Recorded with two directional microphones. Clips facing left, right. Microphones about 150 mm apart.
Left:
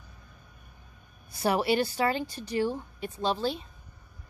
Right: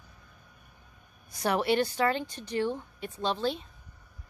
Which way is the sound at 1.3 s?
5° left (ahead or behind).